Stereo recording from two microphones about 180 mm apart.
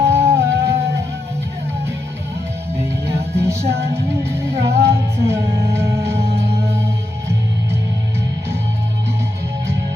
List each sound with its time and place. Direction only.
0.0 s music: 15° right (ahead or behind)
3.3 s music: 15° right (ahead or behind)
6.2 s music: 35° right (ahead or behind)
6.7 s music: 15° right (ahead or behind)